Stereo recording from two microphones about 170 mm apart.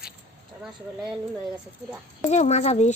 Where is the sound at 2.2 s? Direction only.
40° left (ahead or behind).